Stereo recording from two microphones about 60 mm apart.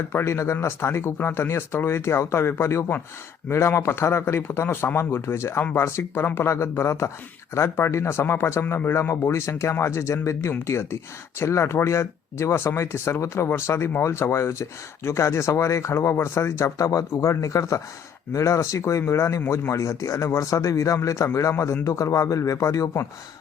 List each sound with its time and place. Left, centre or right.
0.1 s speech: left
9.5 s speech: left
17.1 s speech: left
19.0 s speech: left